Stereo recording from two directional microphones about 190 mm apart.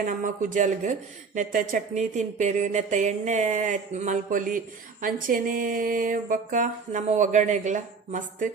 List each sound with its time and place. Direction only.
0.0 s a woman's voice: 45° right (ahead or behind)